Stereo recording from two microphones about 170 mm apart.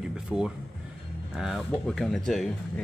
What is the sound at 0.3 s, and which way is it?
Speech, 5° right (ahead or behind).